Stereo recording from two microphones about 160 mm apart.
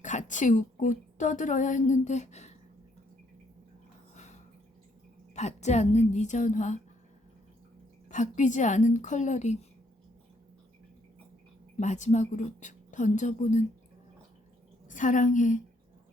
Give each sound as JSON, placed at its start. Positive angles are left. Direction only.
{"t": 0.0, "sound": "a woman's voice", "side_deg": 50}
{"t": 4.1, "sound": "drip", "side_deg": 45}
{"t": 5.3, "sound": "a woman's voice", "side_deg": 45}
{"t": 8.1, "sound": "a woman's voice", "side_deg": 50}
{"t": 11.8, "sound": "a woman's voice", "side_deg": 45}
{"t": 14.8, "sound": "a woman's voice", "side_deg": 55}